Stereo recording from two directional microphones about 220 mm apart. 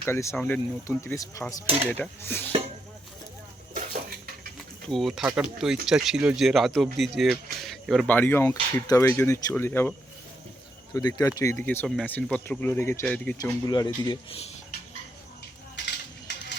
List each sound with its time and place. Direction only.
0.0 s speech: 10° left (ahead or behind)
4.9 s speech: centre (ahead or behind)
10.9 s speech: 15° left (ahead or behind)
13.4 s speech: 20° left (ahead or behind)
15.7 s coin: 50° left (ahead or behind)